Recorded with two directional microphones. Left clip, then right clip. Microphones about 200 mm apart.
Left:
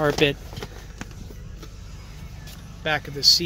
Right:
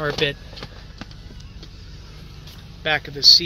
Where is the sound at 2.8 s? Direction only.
10° left (ahead or behind).